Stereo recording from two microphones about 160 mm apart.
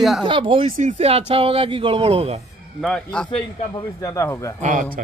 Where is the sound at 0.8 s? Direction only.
45° right (ahead or behind).